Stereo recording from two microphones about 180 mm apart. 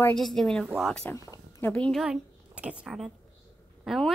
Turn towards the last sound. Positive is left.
turn(degrees=0)  # may be behind; listen again after turning